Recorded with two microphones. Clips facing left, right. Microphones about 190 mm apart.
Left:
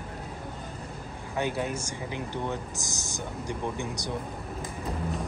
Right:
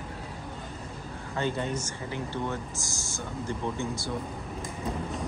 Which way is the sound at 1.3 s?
10° left (ahead or behind).